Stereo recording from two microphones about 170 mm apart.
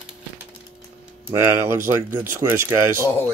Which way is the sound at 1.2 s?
15° right (ahead or behind).